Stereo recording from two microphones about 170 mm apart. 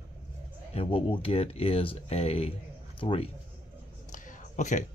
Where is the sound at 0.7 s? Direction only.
35° left (ahead or behind).